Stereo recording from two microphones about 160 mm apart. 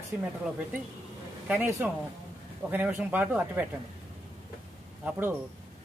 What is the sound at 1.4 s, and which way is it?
Speech, 10° right (ahead or behind).